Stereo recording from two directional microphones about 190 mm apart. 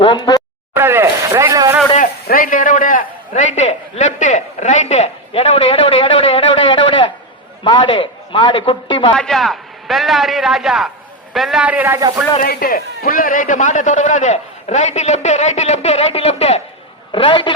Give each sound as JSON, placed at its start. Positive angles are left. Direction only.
{"t": 0.0, "sound": "a man's voice", "side_deg": 25}
{"t": 0.7, "sound": "a sound", "side_deg": -10}
{"t": 2.0, "sound": "a man's voice", "side_deg": 50}
{"t": 9.1, "sound": "a man's voice", "side_deg": 0}
{"t": 12.4, "sound": "a man's voice", "side_deg": 55}